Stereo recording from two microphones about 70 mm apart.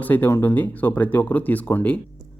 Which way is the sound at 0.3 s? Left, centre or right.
Left.